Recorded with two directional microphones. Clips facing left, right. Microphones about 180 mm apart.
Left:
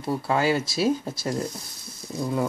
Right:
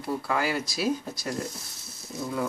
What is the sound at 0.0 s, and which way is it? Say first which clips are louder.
Speech: left 4 dB; 30° left (ahead or behind).